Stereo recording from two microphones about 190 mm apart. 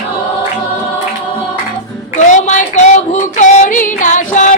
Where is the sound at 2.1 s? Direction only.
40° left (ahead or behind).